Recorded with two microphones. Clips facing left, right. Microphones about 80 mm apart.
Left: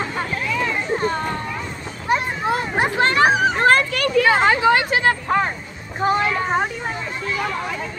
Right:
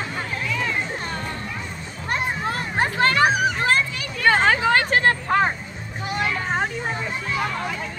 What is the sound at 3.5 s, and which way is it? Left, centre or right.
Children playing, left.